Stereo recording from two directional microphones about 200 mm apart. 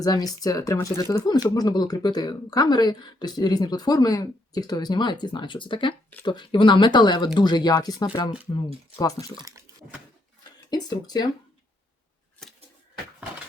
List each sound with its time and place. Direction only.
0.0 s speech: 20° left (ahead or behind)
10.7 s speech: 20° left (ahead or behind)
12.4 s a sound: centre (ahead or behind)